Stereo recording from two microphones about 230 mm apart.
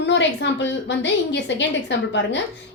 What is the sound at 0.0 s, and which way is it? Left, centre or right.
A woman's voice, left.